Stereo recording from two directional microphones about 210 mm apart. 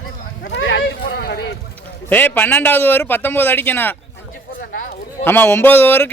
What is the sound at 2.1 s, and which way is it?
A man's voice, 10° left (ahead or behind).